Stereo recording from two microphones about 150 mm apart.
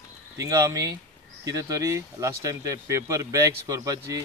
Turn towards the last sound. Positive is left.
turn(degrees=-25)  # may be behind; listen again after turning